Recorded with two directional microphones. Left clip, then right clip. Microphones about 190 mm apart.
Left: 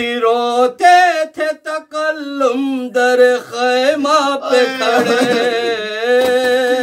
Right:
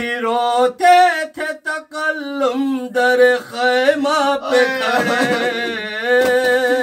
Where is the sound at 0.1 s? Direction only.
30° left (ahead or behind).